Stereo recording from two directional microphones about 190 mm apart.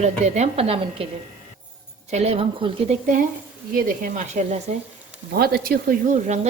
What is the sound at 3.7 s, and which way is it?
Speech, 45° right (ahead or behind).